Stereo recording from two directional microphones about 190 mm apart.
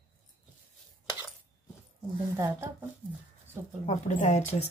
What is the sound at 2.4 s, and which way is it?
Speech, 15° right (ahead or behind).